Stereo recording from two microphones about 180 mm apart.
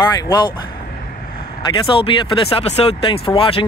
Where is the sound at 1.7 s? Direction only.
30° left (ahead or behind).